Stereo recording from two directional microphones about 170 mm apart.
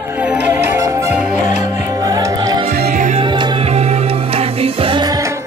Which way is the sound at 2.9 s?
45° right (ahead or behind).